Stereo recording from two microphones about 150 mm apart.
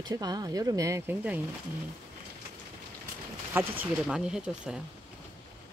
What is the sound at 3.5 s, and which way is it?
Speech, 10° right (ahead or behind).